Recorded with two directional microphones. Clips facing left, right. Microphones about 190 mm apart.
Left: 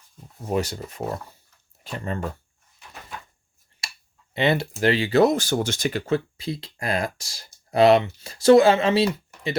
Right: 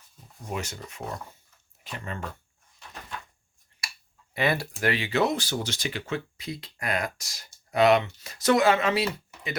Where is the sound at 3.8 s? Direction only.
25° left (ahead or behind).